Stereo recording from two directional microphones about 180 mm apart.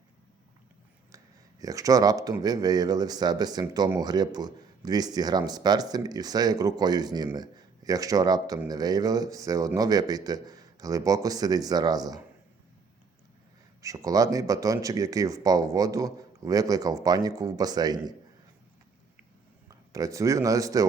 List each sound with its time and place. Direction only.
1.1 s a man's voice: 20° right (ahead or behind)
13.8 s a man's voice: 20° right (ahead or behind)
19.9 s a man's voice: 20° right (ahead or behind)